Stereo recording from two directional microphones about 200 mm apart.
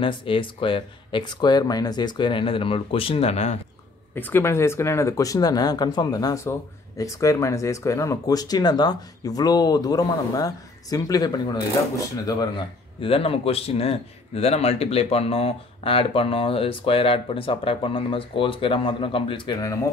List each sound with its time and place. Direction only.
0.0 s speech: 25° left (ahead or behind)
4.1 s speech: 10° left (ahead or behind)